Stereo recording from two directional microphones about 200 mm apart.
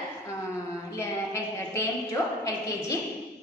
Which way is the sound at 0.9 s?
15° left (ahead or behind).